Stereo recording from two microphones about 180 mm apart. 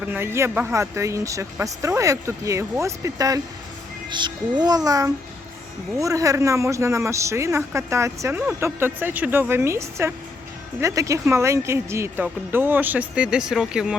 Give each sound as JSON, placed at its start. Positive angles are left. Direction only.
{"t": 0.1, "sound": "a woman's voice", "side_deg": -15}